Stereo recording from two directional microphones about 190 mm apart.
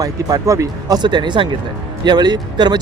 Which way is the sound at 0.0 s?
20° right (ahead or behind).